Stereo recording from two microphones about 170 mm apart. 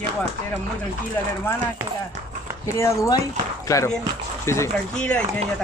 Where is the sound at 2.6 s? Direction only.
15° left (ahead or behind).